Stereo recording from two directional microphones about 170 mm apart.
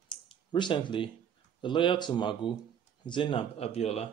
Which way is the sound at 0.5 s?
25° left (ahead or behind).